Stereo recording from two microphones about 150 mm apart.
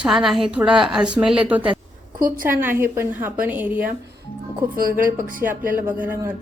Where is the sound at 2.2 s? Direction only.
65° right (ahead or behind).